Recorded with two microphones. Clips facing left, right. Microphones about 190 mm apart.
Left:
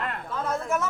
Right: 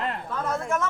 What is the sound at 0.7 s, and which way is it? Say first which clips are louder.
Speech: even; 5° left (ahead or behind).